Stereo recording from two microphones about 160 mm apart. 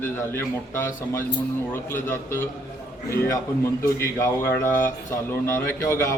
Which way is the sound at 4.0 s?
15° left (ahead or behind).